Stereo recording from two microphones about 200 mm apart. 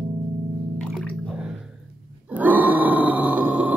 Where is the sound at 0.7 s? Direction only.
5° left (ahead or behind).